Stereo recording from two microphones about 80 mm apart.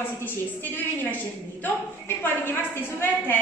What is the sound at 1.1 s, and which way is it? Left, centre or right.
A woman's voice, left.